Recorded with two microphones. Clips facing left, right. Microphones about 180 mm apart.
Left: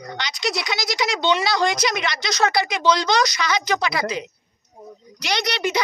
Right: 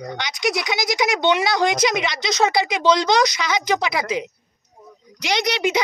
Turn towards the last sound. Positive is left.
turn(degrees=-20)  # may be behind; listen again after turning